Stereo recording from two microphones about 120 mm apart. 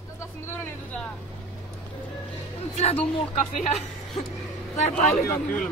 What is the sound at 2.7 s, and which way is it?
Speech, 60° left (ahead or behind).